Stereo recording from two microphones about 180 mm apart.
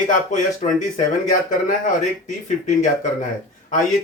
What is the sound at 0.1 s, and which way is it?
Speech, 45° left (ahead or behind).